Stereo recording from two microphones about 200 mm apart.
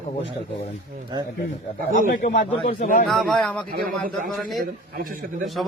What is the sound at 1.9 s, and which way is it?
A man's voice, 40° left (ahead or behind).